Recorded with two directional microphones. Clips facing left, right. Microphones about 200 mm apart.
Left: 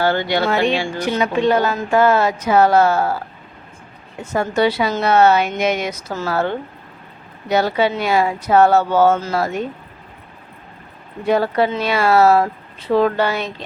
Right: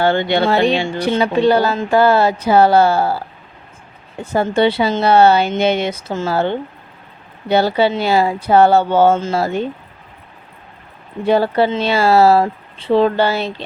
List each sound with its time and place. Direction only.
0.0 s speech: 25° right (ahead or behind)
11.2 s speech: 30° right (ahead or behind)